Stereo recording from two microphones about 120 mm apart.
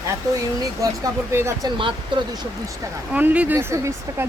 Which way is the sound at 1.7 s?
45° right (ahead or behind).